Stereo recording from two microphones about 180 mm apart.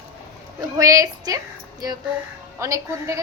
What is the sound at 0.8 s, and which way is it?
Speech, 20° right (ahead or behind).